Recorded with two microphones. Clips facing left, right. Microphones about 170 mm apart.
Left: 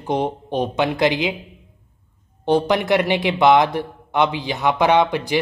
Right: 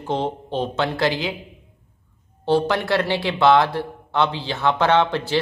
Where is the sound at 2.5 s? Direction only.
15° left (ahead or behind).